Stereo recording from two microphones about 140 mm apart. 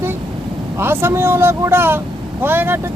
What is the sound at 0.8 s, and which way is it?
Speech, 15° right (ahead or behind).